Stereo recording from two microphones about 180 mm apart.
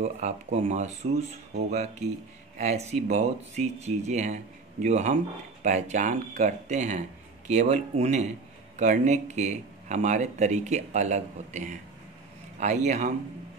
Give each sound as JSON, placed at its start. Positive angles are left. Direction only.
{"t": 0.0, "sound": "speech", "side_deg": -45}